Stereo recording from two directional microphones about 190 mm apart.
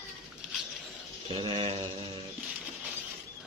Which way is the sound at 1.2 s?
25° right (ahead or behind).